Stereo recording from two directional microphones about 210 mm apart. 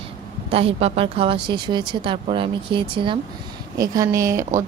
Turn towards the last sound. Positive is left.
turn(degrees=-15)  # may be behind; listen again after turning